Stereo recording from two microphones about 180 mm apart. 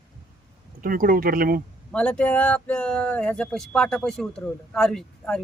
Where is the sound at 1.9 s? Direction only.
5° left (ahead or behind).